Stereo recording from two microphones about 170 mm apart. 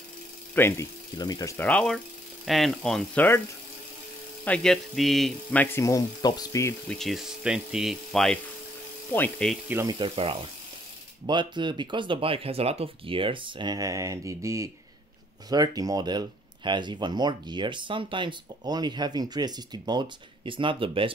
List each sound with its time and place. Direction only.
0.6 s speech: 15° left (ahead or behind)
1.6 s speech: 5° left (ahead or behind)
4.5 s speech: centre (ahead or behind); by 6.7 s 20° left (ahead or behind)
6.9 s speech: centre (ahead or behind)
9.7 s speech: 15° right (ahead or behind)
9.9 s speech: 30° right (ahead or behind)